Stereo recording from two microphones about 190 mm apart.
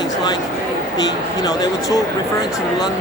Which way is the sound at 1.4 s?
20° left (ahead or behind).